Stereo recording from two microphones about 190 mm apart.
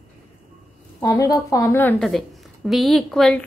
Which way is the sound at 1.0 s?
20° left (ahead or behind).